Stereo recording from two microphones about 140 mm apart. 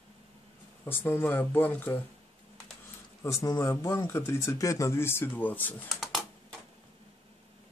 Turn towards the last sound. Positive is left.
turn(degrees=0)  # may be behind; listen again after turning